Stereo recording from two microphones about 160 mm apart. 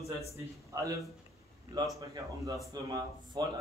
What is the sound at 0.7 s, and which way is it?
A man's voice, 20° right (ahead or behind).